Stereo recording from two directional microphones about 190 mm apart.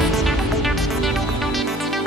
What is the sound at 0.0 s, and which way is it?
Music, centre (ahead or behind).